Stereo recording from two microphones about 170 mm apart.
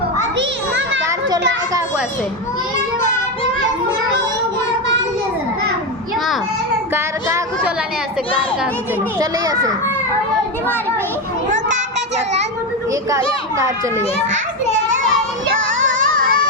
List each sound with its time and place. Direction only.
0.3 s children playing: 90° right
6.9 s a sound: 15° right (ahead or behind)
9.1 s a child's voice: 20° right (ahead or behind)
11.5 s a sound: 45° right (ahead or behind)
12.9 s a child's voice: 20° right (ahead or behind)
16.1 s music: 55° right (ahead or behind)